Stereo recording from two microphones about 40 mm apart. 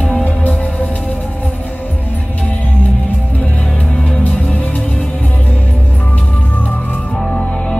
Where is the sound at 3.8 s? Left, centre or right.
Left.